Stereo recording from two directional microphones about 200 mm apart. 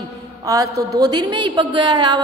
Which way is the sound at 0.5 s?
15° right (ahead or behind).